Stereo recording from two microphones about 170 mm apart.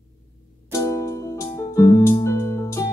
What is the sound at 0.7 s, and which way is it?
Music, 15° left (ahead or behind).